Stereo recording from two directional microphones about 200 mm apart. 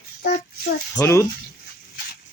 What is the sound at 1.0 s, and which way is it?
Speech, 15° left (ahead or behind).